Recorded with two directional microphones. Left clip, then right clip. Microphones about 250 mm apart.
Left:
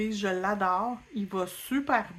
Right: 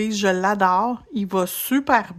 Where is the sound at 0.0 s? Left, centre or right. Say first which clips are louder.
Right 9 dB; right.